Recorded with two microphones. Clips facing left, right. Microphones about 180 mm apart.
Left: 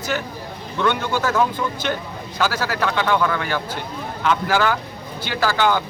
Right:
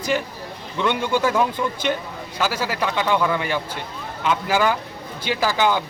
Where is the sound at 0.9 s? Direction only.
10° right (ahead or behind).